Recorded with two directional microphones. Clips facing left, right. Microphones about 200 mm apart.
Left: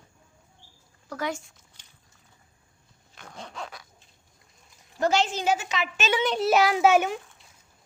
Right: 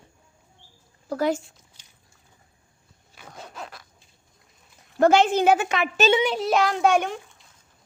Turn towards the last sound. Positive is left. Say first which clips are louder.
# left 1 dB
turn(degrees=5)  # may be behind; listen again after turning